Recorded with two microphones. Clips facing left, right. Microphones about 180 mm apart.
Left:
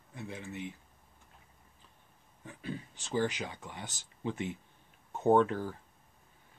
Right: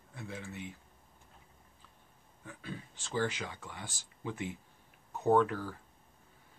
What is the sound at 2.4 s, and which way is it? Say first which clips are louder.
Speech: left 4 dB; 20° left (ahead or behind).